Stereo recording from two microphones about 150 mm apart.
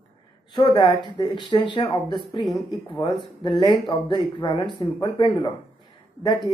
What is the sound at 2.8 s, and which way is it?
Speech, 35° left (ahead or behind).